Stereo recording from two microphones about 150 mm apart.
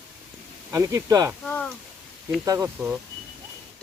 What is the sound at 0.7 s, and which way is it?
Speech, 20° right (ahead or behind).